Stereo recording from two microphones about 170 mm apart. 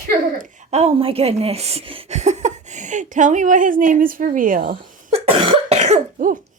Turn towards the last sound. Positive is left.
turn(degrees=-45)  # may be behind; listen again after turning